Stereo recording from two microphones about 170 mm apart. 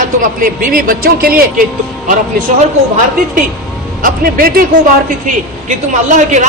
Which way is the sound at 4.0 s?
60° right (ahead or behind).